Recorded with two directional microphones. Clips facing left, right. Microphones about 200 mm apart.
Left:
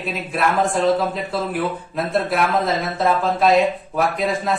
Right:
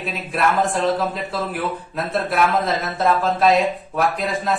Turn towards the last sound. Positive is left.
turn(degrees=0)  # may be behind; listen again after turning